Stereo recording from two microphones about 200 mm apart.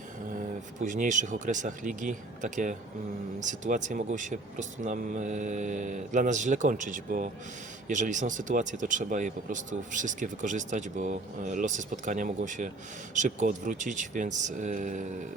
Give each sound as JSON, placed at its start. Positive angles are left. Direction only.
{"t": 0.8, "sound": "speech", "side_deg": -40}